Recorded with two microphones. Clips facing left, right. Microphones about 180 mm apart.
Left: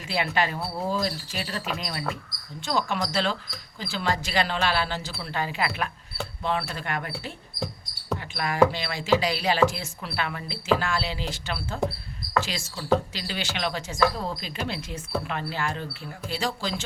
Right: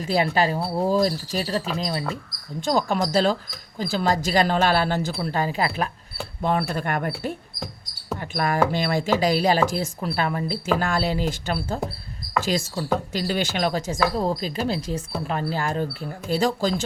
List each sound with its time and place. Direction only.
0.0 s speech: 40° right (ahead or behind)
2.6 s speech: 40° right (ahead or behind)
8.2 s speech: 45° right (ahead or behind)